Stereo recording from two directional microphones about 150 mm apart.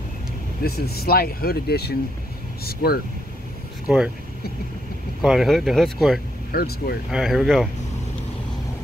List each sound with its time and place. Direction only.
0.7 s speech: 90° left
3.8 s speech: 5° right (ahead or behind)
5.2 s speech: centre (ahead or behind)
6.5 s speech: 90° left
7.1 s speech: centre (ahead or behind)